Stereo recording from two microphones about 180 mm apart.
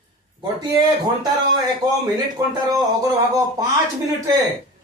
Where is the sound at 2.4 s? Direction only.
20° right (ahead or behind).